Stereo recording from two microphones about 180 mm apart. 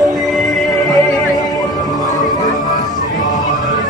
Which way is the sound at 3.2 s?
20° left (ahead or behind).